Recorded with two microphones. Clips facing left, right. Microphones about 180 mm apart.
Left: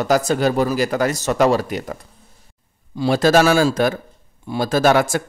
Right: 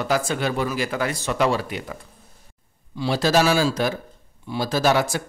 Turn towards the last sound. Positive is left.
turn(degrees=50)  # may be behind; listen again after turning